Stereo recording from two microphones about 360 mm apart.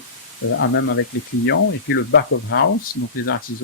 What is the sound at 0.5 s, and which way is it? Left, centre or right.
Speech, left.